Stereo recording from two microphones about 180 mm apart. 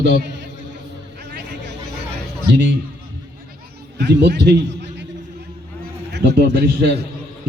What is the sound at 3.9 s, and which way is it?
Speech, 70° right (ahead or behind).